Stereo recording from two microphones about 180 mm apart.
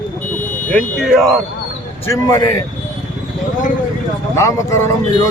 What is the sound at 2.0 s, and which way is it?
Speech, 20° left (ahead or behind).